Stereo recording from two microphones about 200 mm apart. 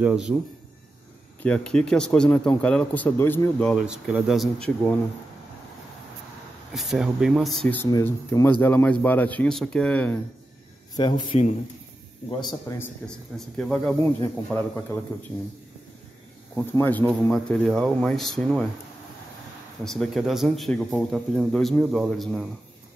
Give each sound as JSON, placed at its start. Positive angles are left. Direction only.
{"t": 0.0, "sound": "speech", "side_deg": -5}
{"t": 1.4, "sound": "speech", "side_deg": 5}
{"t": 3.7, "sound": "speech", "side_deg": -5}
{"t": 6.7, "sound": "speech", "side_deg": 0}
{"t": 11.0, "sound": "speech", "side_deg": 20}
{"t": 12.7, "sound": "speech", "side_deg": 10}
{"t": 16.7, "sound": "speech", "side_deg": 10}
{"t": 19.8, "sound": "speech", "side_deg": 0}